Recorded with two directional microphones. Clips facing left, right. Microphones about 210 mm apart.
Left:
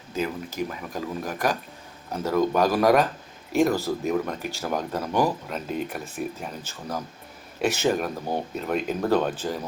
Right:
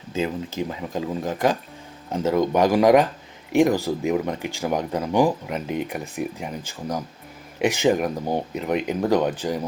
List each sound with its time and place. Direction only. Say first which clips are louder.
0.7 s speech: right 4 dB; 20° right (ahead or behind)